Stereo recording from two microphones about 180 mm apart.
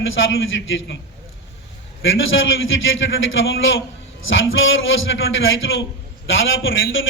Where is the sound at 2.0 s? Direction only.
90° left.